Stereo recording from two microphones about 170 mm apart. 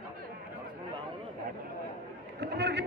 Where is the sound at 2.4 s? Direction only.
80° right.